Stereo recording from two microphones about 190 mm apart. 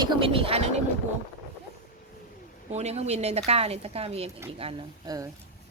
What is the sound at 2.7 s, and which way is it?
A woman's voice, 35° right (ahead or behind).